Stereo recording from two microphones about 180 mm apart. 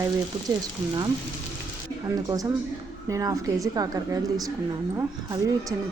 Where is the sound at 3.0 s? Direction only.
20° right (ahead or behind).